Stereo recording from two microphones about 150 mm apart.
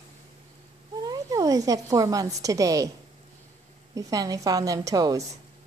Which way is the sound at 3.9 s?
25° right (ahead or behind).